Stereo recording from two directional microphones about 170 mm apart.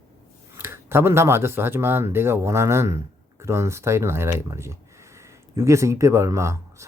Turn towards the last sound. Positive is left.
turn(degrees=-15)  # may be behind; listen again after turning